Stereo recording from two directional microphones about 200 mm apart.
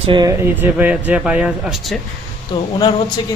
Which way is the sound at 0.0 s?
25° right (ahead or behind).